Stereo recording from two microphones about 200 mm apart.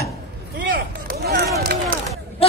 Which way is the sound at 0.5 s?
50° right (ahead or behind).